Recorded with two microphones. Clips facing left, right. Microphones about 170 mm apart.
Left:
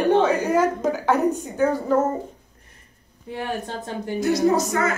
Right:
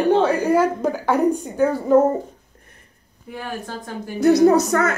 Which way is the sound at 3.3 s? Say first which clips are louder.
Left 2 dB; 25° left (ahead or behind).